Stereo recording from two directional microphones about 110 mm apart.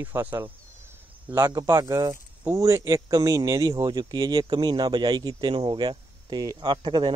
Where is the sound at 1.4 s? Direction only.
35° right (ahead or behind).